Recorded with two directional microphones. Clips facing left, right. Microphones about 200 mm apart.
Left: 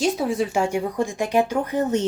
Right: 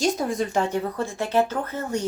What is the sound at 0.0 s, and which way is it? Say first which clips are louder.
Speech: left 2 dB; 5° left (ahead or behind).